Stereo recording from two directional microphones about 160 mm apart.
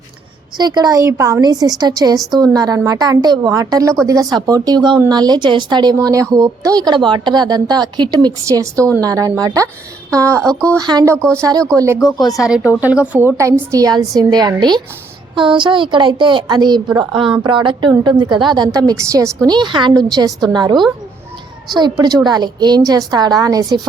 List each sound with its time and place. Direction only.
0.5 s a woman's voice: 25° right (ahead or behind)
11.9 s speech: 25° left (ahead or behind)
12.4 s a woman's voice: 5° right (ahead or behind); by 23.8 s 25° right (ahead or behind)